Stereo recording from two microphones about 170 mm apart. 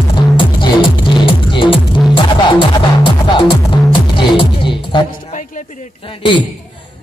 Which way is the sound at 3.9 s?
30° left (ahead or behind).